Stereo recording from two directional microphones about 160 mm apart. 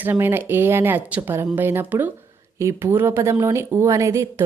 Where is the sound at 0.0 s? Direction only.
15° right (ahead or behind).